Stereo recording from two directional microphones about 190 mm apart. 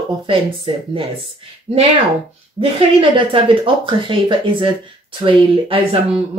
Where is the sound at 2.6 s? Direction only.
30° right (ahead or behind).